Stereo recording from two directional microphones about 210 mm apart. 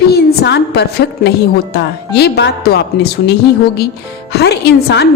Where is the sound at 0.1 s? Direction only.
50° left (ahead or behind).